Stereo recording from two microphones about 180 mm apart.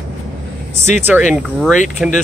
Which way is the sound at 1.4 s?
Centre (ahead or behind).